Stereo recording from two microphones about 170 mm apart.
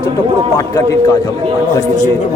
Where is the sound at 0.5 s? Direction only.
20° left (ahead or behind).